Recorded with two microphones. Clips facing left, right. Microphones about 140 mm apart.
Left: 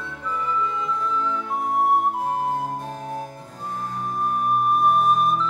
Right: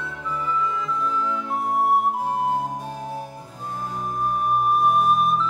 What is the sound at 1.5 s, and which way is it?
Flute, centre (ahead or behind).